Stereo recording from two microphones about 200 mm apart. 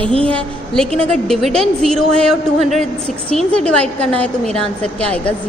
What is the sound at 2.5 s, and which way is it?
Speech, 35° right (ahead or behind).